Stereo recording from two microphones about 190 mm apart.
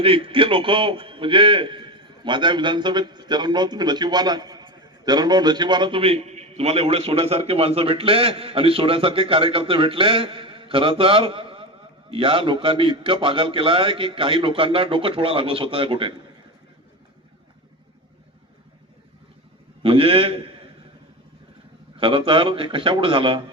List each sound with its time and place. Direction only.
0.0 s a man's voice: 30° right (ahead or behind)
19.8 s a man's voice: 30° right (ahead or behind)
21.9 s a man's voice: 30° right (ahead or behind)